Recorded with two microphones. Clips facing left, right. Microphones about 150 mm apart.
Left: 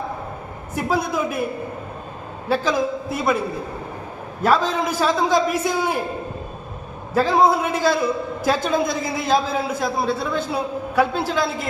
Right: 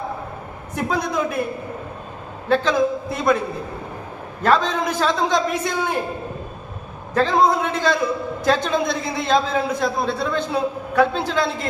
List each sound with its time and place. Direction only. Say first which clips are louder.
0.8 s a woman's voice: even; 5° left (ahead or behind)
2.5 s a man's voice: right 2 dB; 5° left (ahead or behind)
4.4 s a man's voice: even; 5° left (ahead or behind)
7.1 s a man's voice: left 1 dB; 10° left (ahead or behind)